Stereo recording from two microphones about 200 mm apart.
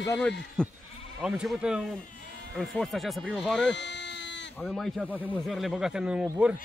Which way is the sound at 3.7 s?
60° left (ahead or behind).